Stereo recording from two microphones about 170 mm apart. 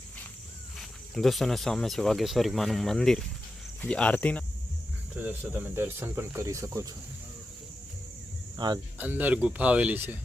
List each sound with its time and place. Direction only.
0.8 s speech: centre (ahead or behind)
5.2 s speech: 10° right (ahead or behind)
8.5 s speech: 25° right (ahead or behind)
9.0 s speech: 10° right (ahead or behind)